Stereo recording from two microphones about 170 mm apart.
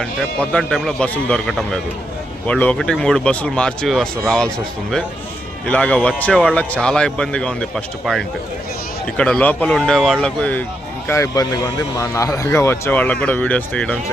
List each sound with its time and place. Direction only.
0.0 s speech: 5° left (ahead or behind)
11.1 s speech: 20° left (ahead or behind)